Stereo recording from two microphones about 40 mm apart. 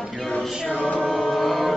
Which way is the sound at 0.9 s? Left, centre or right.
Left.